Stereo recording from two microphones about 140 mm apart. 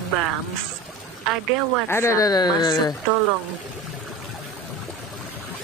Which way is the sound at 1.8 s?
20° left (ahead or behind).